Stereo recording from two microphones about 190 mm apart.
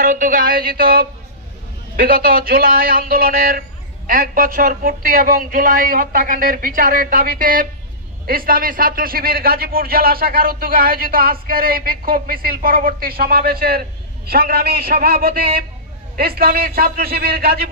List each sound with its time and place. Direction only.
0.0 s a man's voice: 45° right (ahead or behind)